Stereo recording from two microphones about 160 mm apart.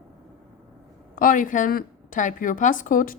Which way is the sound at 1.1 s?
60° left (ahead or behind).